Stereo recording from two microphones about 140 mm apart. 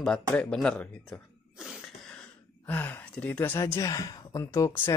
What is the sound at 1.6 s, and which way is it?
Cough, centre (ahead or behind).